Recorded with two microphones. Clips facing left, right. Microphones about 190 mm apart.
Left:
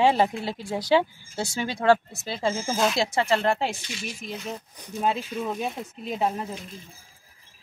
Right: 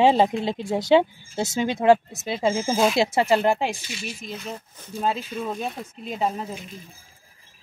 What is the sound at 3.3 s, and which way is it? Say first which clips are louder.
Speech: right 3 dB; 10° right (ahead or behind).